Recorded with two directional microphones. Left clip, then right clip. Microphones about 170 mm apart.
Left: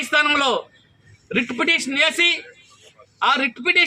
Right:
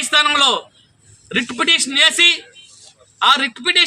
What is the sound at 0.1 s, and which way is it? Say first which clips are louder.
A man's voice: right 4 dB; 20° right (ahead or behind).